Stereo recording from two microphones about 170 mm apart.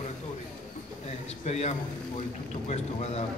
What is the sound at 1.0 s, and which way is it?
A man's voice, 40° left (ahead or behind).